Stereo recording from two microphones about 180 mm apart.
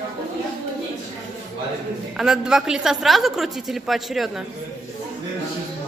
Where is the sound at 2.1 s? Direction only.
5° right (ahead or behind).